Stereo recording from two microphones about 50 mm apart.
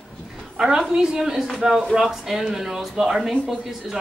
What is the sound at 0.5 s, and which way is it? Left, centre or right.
Speech, centre.